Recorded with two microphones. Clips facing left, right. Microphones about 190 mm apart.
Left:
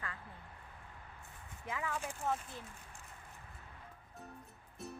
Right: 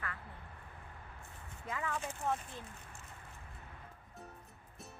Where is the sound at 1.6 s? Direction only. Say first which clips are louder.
Right 1 dB; 10° left (ahead or behind).